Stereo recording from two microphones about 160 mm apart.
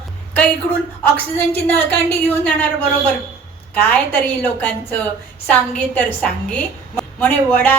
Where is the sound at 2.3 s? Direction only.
10° left (ahead or behind).